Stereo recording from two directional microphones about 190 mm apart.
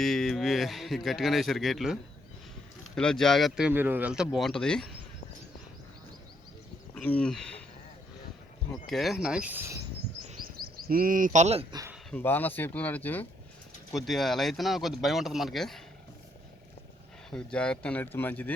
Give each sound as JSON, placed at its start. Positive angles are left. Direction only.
{"t": 0.0, "sound": "speech", "side_deg": 0}
{"t": 6.9, "sound": "speech", "side_deg": 5}
{"t": 8.9, "sound": "speech", "side_deg": 0}
{"t": 10.8, "sound": "speech", "side_deg": -50}
{"t": 11.7, "sound": "speech", "side_deg": -15}
{"t": 12.1, "sound": "speech", "side_deg": 10}
{"t": 17.3, "sound": "speech", "side_deg": 5}